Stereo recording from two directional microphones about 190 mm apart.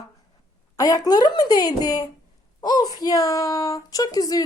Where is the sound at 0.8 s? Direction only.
20° left (ahead or behind).